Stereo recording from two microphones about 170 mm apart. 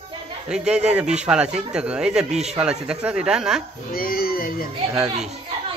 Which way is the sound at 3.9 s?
60° left (ahead or behind).